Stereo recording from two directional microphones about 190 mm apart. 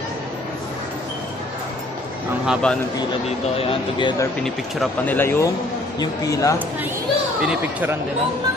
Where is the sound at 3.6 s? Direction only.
30° left (ahead or behind).